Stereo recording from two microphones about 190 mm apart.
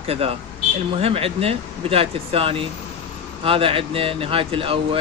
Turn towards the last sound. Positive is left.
turn(degrees=-30)  # may be behind; listen again after turning